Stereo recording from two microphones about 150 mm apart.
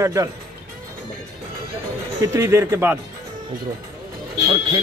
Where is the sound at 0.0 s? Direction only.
20° right (ahead or behind).